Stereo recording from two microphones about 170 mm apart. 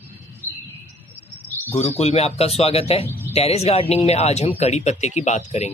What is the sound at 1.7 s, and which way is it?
Speech, 35° left (ahead or behind).